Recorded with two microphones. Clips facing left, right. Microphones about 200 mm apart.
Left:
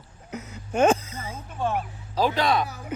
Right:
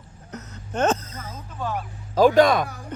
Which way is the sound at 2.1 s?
45° right (ahead or behind).